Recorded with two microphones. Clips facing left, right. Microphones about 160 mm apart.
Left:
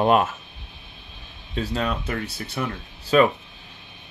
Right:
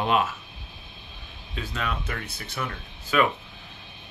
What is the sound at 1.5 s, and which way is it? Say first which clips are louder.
Speech: left 6 dB; 35° left (ahead or behind).